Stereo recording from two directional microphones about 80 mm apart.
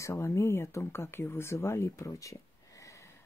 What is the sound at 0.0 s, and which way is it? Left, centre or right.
Speech, left.